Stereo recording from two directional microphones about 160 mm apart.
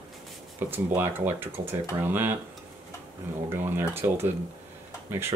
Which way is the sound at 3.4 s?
15° right (ahead or behind).